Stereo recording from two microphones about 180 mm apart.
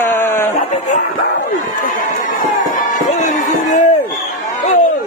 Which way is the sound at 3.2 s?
45° left (ahead or behind).